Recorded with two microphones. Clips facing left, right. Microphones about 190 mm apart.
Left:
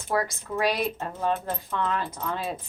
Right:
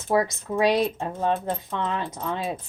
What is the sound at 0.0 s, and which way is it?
A woman's voice, 20° right (ahead or behind).